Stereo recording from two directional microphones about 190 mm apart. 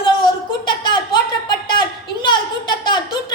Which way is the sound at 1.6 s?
25° left (ahead or behind).